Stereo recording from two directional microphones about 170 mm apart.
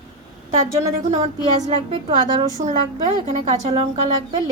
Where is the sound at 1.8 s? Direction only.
30° right (ahead or behind).